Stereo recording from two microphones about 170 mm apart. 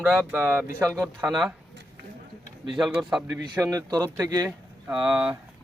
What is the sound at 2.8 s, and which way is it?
Speech, centre (ahead or behind).